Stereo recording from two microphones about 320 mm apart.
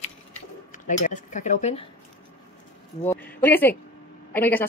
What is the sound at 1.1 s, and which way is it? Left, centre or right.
Speech, left.